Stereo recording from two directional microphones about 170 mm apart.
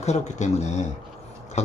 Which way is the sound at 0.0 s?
40° left (ahead or behind).